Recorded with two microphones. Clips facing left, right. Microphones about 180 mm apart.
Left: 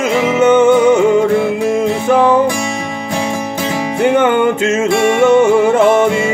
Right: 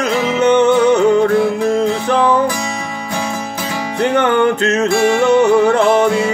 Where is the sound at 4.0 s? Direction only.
5° left (ahead or behind).